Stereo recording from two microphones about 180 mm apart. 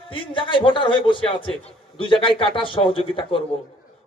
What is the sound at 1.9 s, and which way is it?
A man's voice, 30° left (ahead or behind).